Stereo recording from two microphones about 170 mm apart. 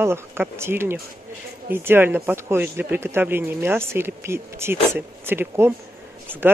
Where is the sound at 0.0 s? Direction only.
15° right (ahead or behind).